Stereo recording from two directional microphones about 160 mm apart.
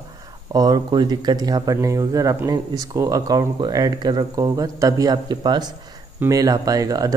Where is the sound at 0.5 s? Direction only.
25° right (ahead or behind).